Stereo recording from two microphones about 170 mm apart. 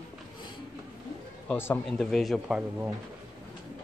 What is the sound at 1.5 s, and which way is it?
Speech, 10° left (ahead or behind).